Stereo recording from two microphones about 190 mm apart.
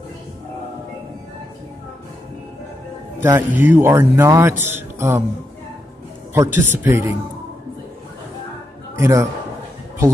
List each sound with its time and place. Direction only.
3.2 s a man's voice: 10° right (ahead or behind)
6.3 s a man's voice: 10° right (ahead or behind)
8.9 s a man's voice: 15° right (ahead or behind)